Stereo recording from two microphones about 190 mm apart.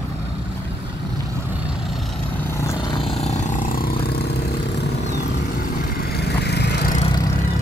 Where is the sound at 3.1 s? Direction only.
35° left (ahead or behind); by 6.9 s 60° left (ahead or behind).